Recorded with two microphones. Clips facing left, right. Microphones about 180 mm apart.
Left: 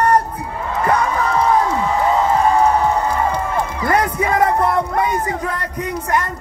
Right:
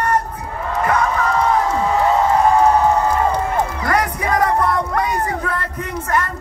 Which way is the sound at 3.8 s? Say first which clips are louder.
Left 2 dB; 25° left (ahead or behind).